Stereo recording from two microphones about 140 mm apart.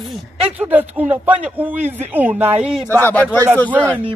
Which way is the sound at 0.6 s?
10° right (ahead or behind).